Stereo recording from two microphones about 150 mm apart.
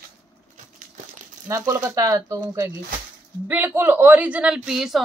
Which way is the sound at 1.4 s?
20° right (ahead or behind).